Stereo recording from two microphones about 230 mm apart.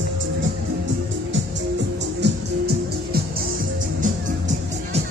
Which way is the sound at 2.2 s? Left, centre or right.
Right.